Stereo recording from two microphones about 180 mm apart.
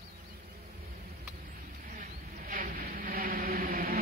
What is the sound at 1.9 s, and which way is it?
Vehicle, 50° right (ahead or behind).